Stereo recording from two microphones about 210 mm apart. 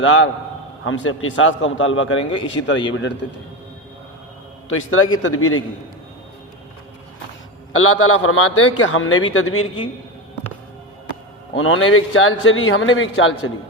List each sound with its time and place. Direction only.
0.0 s a man's voice: 65° left (ahead or behind)
4.7 s a man's voice: 70° left (ahead or behind)
7.7 s a man's voice: 80° left
11.5 s a man's voice: 70° left (ahead or behind)